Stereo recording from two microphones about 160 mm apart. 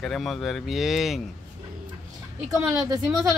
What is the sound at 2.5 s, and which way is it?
Speech, 20° right (ahead or behind).